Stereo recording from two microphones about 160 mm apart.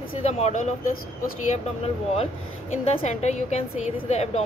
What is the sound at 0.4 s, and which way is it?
Speech, 45° left (ahead or behind).